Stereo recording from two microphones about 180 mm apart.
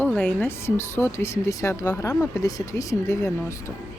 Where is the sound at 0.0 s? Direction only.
5° left (ahead or behind).